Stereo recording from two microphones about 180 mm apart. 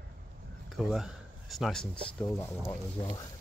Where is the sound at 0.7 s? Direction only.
Centre (ahead or behind).